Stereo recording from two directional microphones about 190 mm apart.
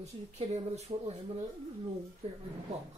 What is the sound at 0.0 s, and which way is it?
Speech, 35° right (ahead or behind).